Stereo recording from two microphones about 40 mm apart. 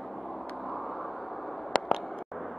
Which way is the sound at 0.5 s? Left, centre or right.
Centre.